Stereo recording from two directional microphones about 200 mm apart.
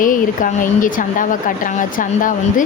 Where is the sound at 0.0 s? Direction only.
40° left (ahead or behind).